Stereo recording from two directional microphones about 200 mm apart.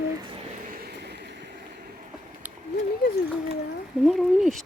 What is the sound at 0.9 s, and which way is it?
Vehicle, 55° right (ahead or behind).